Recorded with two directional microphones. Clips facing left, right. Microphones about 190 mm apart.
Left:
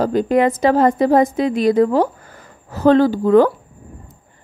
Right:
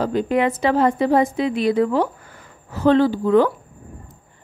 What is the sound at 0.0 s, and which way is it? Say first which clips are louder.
Speech: left 4 dB; 40° left (ahead or behind).